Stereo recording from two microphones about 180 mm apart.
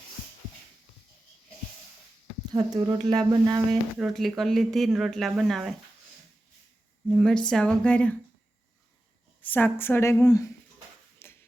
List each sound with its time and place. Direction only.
2.5 s speech: 20° right (ahead or behind)
3.7 s speech: centre (ahead or behind)
7.1 s speech: 5° left (ahead or behind)
9.4 s a woman's voice: 10° left (ahead or behind)
11.2 s shuffle: 15° left (ahead or behind)